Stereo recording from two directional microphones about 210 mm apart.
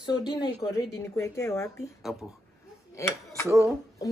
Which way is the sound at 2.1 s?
5° right (ahead or behind).